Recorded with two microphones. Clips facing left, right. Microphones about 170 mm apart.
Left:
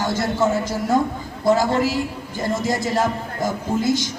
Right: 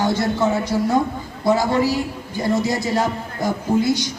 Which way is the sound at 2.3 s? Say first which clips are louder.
Right 2 dB; 45° left (ahead or behind).